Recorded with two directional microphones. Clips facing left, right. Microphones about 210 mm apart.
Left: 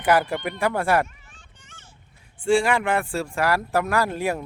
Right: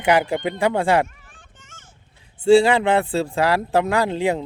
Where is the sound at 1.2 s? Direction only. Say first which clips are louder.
Right 3 dB; 50° right (ahead or behind).